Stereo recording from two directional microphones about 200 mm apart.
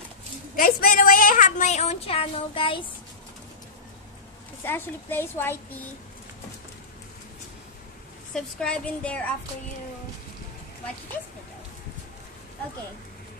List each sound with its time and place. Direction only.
0.6 s a woman's voice: 45° left (ahead or behind); by 2.8 s 25° left (ahead or behind)
4.6 s a woman's voice: 10° left (ahead or behind)
8.4 s a woman's voice: 5° left (ahead or behind)